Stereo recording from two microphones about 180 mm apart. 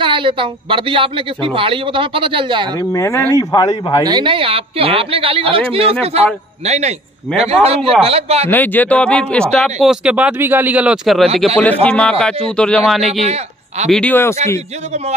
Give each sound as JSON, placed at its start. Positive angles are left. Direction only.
{"t": 0.0, "sound": "speech", "side_deg": -30}
{"t": 2.8, "sound": "a man's voice", "side_deg": 15}
{"t": 4.0, "sound": "a woman's voice", "side_deg": -25}
{"t": 8.5, "sound": "speech", "side_deg": 10}
{"t": 13.2, "sound": "speech", "side_deg": -35}
{"t": 13.8, "sound": "speech", "side_deg": 5}